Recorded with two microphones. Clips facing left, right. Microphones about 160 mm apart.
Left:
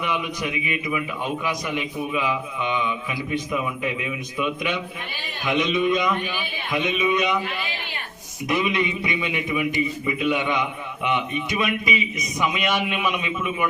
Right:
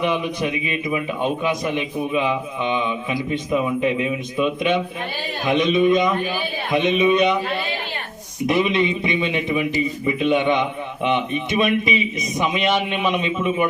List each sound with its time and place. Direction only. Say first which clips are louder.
0.0 s a man's voice: right 5 dB; 30° right (ahead or behind)
6.2 s a man's voice: right 5 dB; 35° right (ahead or behind)
8.4 s a man's voice: right 4 dB; 25° right (ahead or behind)